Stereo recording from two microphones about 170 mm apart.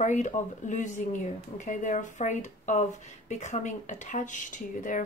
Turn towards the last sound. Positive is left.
turn(degrees=50)  # may be behind; listen again after turning